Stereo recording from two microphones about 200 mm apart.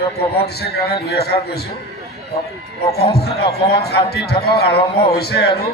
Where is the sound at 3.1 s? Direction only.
55° left (ahead or behind).